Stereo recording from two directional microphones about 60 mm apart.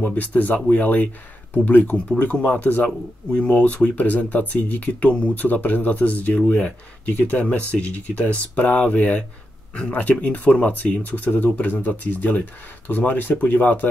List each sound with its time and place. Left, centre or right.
0.0 s speech: left